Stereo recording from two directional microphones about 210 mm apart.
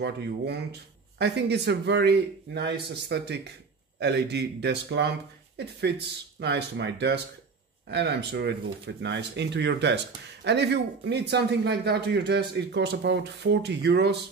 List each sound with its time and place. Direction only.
0.0 s speech: 50° right (ahead or behind)
6.4 s speech: 55° right (ahead or behind)